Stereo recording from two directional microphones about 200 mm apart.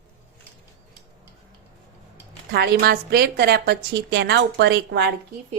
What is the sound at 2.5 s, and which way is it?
A woman's voice, 50° right (ahead or behind).